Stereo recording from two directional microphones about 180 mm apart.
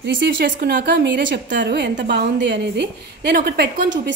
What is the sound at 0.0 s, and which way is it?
Speech, 80° right.